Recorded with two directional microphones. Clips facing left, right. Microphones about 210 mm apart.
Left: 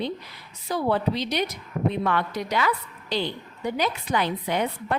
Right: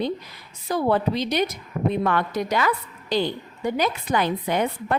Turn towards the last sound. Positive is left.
turn(degrees=-50)  # may be behind; listen again after turning